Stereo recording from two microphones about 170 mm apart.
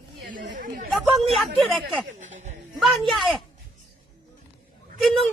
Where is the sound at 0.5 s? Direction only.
55° right (ahead or behind).